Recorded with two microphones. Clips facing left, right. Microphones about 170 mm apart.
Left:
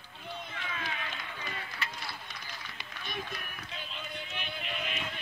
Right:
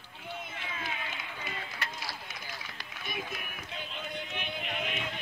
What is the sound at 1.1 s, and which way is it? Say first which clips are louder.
Run: even; 5° right (ahead or behind).